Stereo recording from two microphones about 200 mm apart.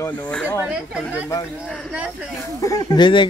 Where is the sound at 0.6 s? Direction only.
5° right (ahead or behind).